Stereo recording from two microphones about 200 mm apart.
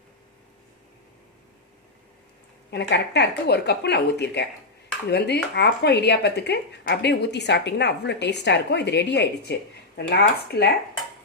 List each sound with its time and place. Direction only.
2.6 s a woman's voice: 55° left (ahead or behind)